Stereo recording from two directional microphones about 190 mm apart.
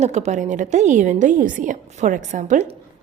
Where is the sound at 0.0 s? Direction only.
35° right (ahead or behind).